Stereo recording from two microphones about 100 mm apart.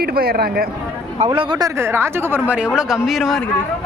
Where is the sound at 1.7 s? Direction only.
25° right (ahead or behind).